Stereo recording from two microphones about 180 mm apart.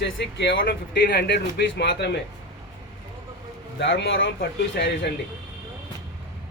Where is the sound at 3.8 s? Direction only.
80° left.